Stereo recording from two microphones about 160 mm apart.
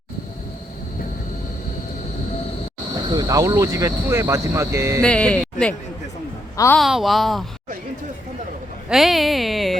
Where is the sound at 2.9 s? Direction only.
25° right (ahead or behind).